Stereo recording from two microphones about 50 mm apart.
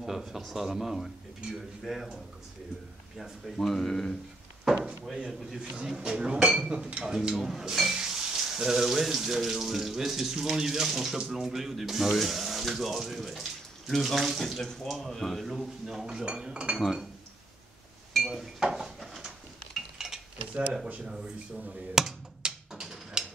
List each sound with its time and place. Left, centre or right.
0.0 s speech: centre
3.2 s speech: centre
5.6 s speech: centre
7.3 s speech: centre
16.3 s speech: centre
18.3 s dishes: centre
20.5 s speech: centre
22.0 s speech: centre
22.4 s a sound: centre